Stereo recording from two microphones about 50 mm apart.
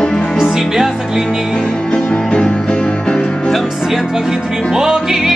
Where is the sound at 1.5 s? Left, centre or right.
Centre.